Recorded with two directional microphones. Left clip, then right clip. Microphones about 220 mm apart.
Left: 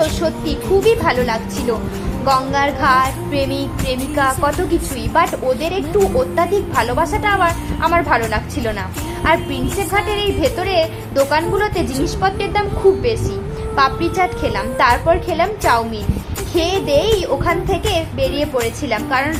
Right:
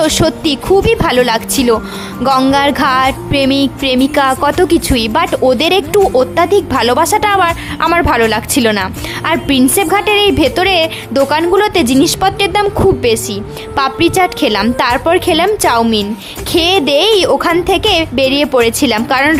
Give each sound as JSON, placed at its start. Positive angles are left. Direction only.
{"t": 0.1, "sound": "speech", "side_deg": -45}